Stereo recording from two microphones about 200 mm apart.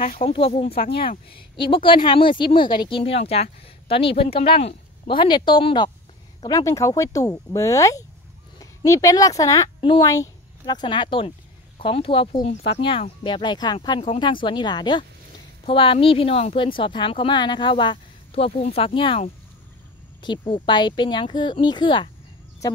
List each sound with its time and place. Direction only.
0.2 s speech: 30° left (ahead or behind)
0.7 s speech: 50° left (ahead or behind)
1.7 s speech: 25° left (ahead or behind)